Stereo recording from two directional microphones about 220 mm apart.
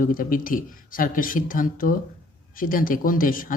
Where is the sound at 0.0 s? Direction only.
40° left (ahead or behind).